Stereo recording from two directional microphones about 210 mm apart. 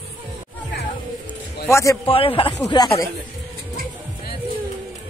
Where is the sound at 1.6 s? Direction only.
15° left (ahead or behind).